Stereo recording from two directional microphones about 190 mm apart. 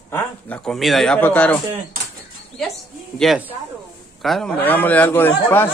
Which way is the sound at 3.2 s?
Centre (ahead or behind).